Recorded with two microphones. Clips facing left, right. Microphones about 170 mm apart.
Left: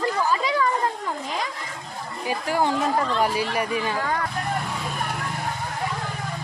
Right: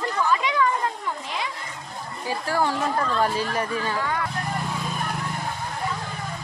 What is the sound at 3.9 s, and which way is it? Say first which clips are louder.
Speech: left 1 dB; 40° left (ahead or behind).